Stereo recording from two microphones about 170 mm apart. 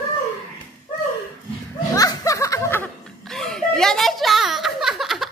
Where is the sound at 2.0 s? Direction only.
20° left (ahead or behind).